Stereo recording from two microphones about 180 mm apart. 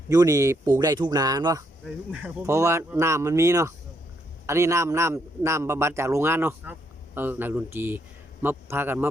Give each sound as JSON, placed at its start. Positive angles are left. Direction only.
{"t": 0.1, "sound": "a man's voice", "side_deg": -20}